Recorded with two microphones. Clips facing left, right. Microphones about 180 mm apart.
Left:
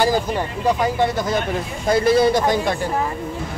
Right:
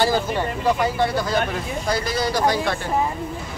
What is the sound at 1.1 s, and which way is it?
Speech, 20° left (ahead or behind).